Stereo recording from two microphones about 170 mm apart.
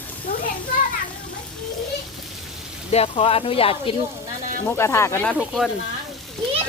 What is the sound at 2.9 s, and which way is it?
Speech, 35° left (ahead or behind).